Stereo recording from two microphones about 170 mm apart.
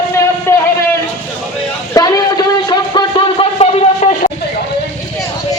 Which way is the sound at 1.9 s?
25° left (ahead or behind).